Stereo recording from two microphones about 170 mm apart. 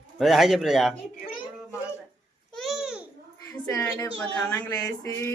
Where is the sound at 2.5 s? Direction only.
Centre (ahead or behind).